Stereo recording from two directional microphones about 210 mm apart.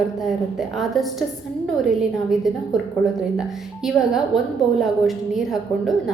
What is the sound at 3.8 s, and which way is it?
A woman's voice, centre (ahead or behind).